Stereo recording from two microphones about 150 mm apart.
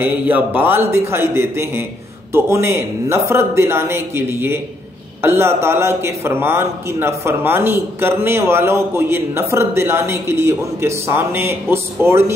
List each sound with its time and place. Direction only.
0.0 s a man's voice: 10° right (ahead or behind)